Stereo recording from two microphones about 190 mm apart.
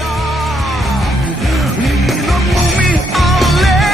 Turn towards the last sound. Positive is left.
turn(degrees=0)  # may be behind; listen again after turning